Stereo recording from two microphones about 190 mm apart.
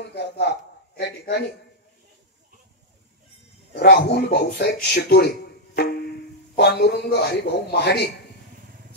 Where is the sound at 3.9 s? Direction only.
55° left (ahead or behind).